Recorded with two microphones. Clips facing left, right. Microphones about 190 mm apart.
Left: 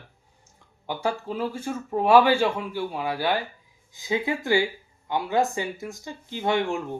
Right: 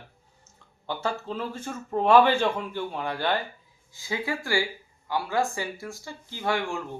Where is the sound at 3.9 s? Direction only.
20° left (ahead or behind).